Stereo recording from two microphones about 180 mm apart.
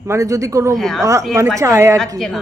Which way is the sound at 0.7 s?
Centre (ahead or behind).